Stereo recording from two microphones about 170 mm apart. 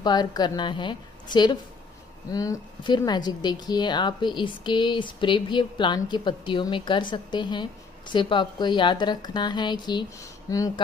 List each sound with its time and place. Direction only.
0.0 s a woman's voice: 25° left (ahead or behind)